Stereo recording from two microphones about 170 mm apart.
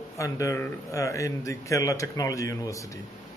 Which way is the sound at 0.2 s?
20° left (ahead or behind).